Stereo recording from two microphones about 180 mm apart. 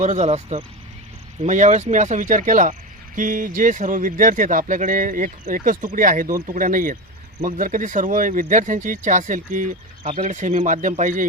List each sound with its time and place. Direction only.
0.0 s speech: 40° right (ahead or behind)